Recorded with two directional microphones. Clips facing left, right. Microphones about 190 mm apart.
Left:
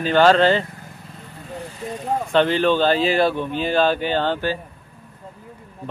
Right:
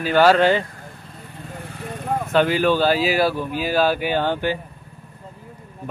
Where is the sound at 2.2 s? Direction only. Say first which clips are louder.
Even; 5° right (ahead or behind).